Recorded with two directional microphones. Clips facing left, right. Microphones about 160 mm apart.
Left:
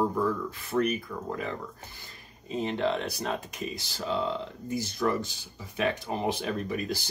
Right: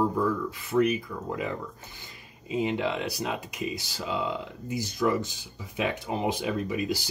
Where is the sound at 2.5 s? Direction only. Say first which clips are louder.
Right 1 dB; 10° right (ahead or behind).